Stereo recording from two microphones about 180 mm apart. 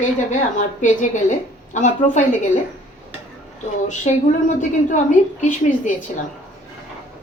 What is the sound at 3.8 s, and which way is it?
A woman's voice, 45° left (ahead or behind).